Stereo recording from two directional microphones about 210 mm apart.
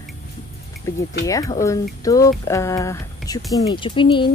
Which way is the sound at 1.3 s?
15° left (ahead or behind).